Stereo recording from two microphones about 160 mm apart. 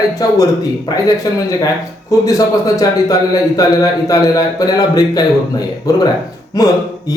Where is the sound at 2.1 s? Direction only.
20° left (ahead or behind).